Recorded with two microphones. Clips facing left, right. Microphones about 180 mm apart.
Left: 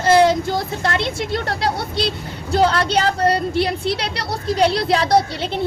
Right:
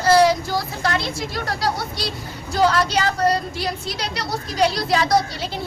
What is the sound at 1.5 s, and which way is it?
Speech, 60° left (ahead or behind).